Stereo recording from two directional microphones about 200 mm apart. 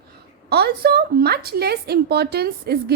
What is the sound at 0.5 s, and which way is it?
A woman's voice, 50° right (ahead or behind).